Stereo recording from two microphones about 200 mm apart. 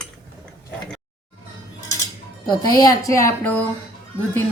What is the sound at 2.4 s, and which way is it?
A woman's voice, 20° left (ahead or behind).